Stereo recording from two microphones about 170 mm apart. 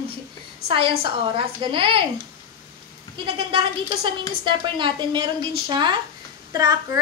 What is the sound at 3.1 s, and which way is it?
Speech, 30° right (ahead or behind).